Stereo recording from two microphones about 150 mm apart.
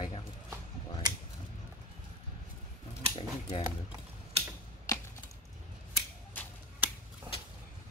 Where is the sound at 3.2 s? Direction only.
40° left (ahead or behind).